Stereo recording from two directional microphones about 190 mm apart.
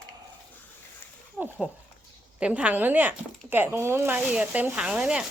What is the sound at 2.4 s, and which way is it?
Speech, 5° right (ahead or behind).